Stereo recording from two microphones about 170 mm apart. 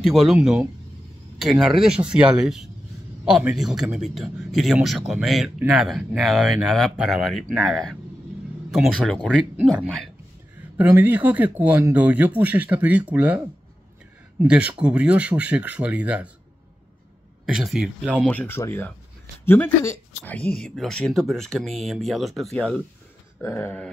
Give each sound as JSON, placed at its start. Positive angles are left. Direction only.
{"t": 0.0, "sound": "a man's voice", "side_deg": 0}
{"t": 10.8, "sound": "speech", "side_deg": -10}
{"t": 14.4, "sound": "speech", "side_deg": -10}
{"t": 17.5, "sound": "a man's voice", "side_deg": 0}
{"t": 18.2, "sound": "a man's voice", "side_deg": 10}
{"t": 23.4, "sound": "speech", "side_deg": 15}